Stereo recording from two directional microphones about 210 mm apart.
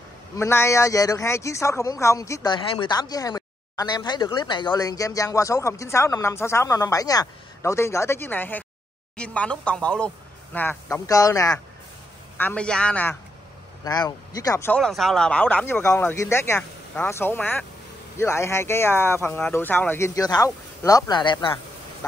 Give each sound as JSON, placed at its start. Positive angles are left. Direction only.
{"t": 0.4, "sound": "a man's voice", "side_deg": 10}